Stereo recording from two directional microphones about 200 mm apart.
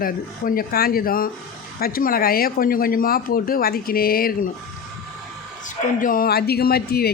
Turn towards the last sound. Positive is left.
turn(degrees=50)  # may be behind; listen again after turning